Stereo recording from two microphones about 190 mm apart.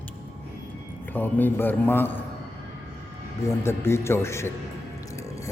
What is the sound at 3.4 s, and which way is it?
A man's voice, 15° left (ahead or behind).